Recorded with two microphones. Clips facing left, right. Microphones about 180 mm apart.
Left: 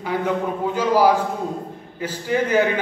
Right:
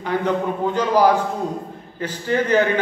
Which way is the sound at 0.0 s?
5° left (ahead or behind).